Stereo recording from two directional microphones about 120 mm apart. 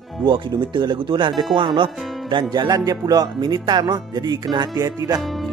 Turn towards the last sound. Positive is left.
turn(degrees=0)  # may be behind; listen again after turning